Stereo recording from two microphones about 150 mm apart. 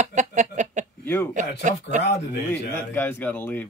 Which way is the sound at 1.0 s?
15° left (ahead or behind).